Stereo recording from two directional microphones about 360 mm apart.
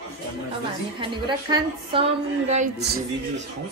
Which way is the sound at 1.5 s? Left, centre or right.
Centre.